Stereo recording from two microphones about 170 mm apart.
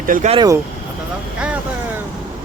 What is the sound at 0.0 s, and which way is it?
Speech, 55° right (ahead or behind).